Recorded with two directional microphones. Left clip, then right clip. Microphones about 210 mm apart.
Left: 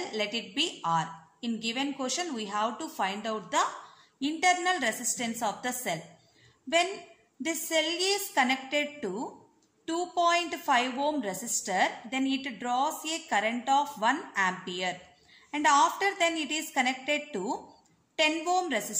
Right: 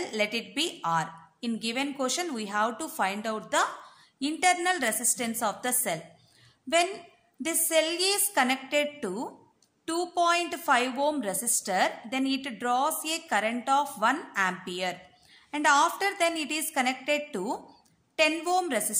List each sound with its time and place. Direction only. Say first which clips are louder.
0.0 s a woman's voice: right 3 dB; 25° right (ahead or behind)
7.4 s a woman's voice: right 3 dB; 25° right (ahead or behind)